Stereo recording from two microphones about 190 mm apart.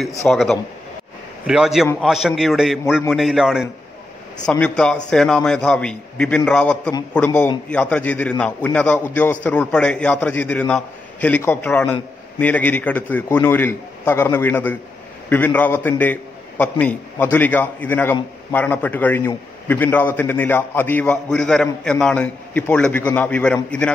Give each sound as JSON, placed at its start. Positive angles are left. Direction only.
{"t": 0.3, "sound": "a man's voice", "side_deg": 0}